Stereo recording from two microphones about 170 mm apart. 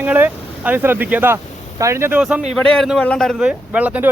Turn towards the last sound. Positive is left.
turn(degrees=-10)  # may be behind; listen again after turning